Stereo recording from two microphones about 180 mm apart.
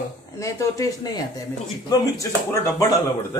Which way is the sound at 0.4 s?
20° left (ahead or behind).